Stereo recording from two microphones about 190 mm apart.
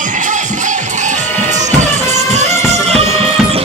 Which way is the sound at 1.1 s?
40° right (ahead or behind).